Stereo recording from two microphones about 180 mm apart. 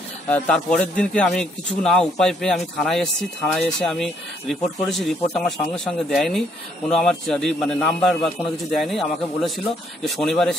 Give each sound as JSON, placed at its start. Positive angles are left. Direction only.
{"t": 0.3, "sound": "speech", "side_deg": 5}